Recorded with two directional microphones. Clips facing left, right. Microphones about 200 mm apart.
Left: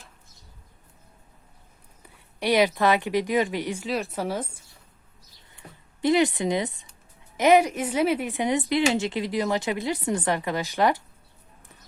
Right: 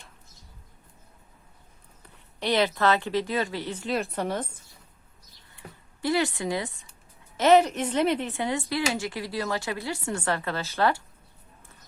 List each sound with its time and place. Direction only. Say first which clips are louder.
2.4 s a woman's voice: left 3 dB; 10° left (ahead or behind)
3.8 s a woman's voice: even; centre (ahead or behind)
5.5 s a sound: left 3 dB; 20° left (ahead or behind)
7.3 s a woman's voice: even; 10° left (ahead or behind)